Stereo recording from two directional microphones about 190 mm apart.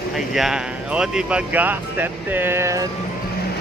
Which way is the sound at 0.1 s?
Centre (ahead or behind).